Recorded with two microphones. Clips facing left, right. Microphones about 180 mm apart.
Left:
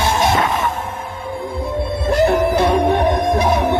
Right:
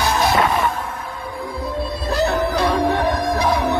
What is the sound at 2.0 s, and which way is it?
Music, 25° left (ahead or behind).